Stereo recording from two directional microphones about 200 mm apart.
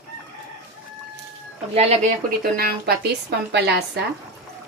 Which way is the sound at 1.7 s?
30° right (ahead or behind).